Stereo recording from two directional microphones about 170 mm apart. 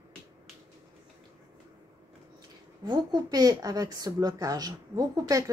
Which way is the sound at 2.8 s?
25° right (ahead or behind).